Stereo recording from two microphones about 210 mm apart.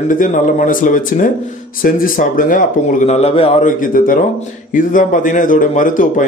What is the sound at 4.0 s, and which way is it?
A man's voice, 40° left (ahead or behind).